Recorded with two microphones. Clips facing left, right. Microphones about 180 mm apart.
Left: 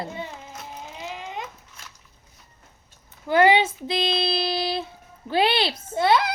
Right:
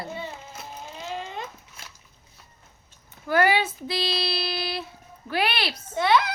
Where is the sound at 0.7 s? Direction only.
15° left (ahead or behind).